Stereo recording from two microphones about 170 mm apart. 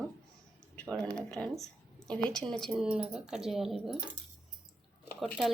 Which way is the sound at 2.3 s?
30° right (ahead or behind).